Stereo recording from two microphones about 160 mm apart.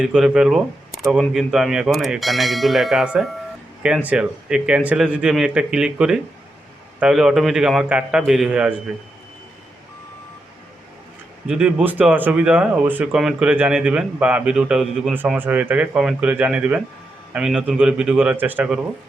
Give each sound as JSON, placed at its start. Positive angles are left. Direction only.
{"t": 0.0, "sound": "speech", "side_deg": -5}
{"t": 11.4, "sound": "speech", "side_deg": -5}